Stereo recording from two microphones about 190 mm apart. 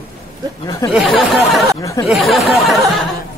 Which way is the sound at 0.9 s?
Centre (ahead or behind).